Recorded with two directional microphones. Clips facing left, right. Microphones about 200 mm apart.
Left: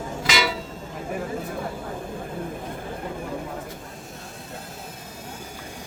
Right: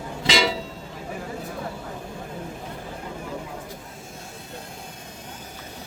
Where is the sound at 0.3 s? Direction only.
25° right (ahead or behind).